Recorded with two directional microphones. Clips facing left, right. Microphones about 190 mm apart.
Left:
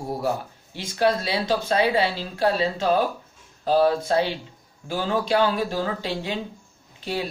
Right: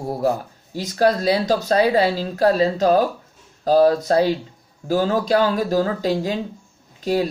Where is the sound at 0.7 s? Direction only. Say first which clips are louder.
Right 4 dB; 40° right (ahead or behind).